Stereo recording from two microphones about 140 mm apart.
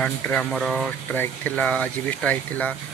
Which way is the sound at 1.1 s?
10° left (ahead or behind).